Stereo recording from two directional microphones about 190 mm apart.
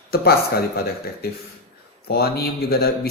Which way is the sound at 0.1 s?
55° left (ahead or behind).